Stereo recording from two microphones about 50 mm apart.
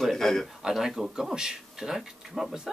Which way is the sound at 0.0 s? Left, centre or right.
Centre.